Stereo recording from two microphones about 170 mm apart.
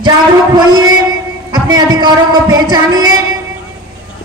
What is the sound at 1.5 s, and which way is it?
A man's voice, 25° right (ahead or behind).